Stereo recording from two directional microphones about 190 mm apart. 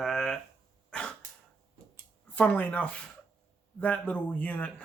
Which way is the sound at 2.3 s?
5° left (ahead or behind).